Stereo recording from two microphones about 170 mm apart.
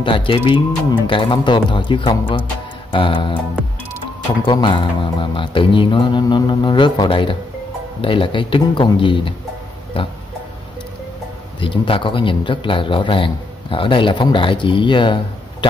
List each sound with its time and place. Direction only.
0.0 s a man's voice: 30° left (ahead or behind)
4.5 s a man's voice: 30° left (ahead or behind)
11.6 s a man's voice: 30° left (ahead or behind)